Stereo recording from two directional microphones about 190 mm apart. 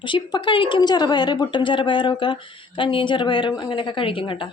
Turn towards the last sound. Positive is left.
turn(degrees=25)  # may be behind; listen again after turning